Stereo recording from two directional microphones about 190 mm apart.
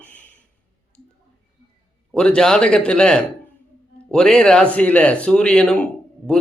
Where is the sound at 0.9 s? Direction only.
5° left (ahead or behind).